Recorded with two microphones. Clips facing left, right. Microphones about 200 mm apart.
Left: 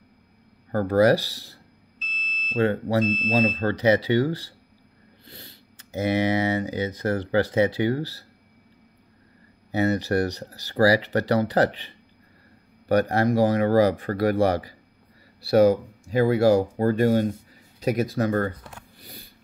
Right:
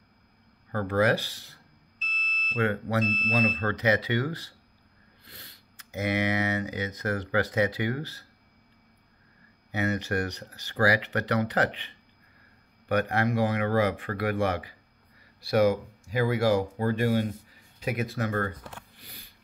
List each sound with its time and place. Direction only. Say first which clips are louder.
0.7 s speech: left 6 dB; 35° left (ahead or behind)
9.7 s speech: left 6 dB; 35° left (ahead or behind)
18.9 s a sound: left 6 dB; 35° left (ahead or behind)